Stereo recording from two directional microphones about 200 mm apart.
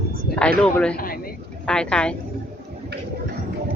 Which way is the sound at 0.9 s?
45° left (ahead or behind).